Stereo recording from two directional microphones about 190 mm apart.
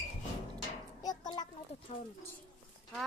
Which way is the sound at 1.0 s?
20° left (ahead or behind).